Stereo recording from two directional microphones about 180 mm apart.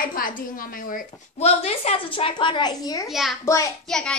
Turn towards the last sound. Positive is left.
turn(degrees=5)  # may be behind; listen again after turning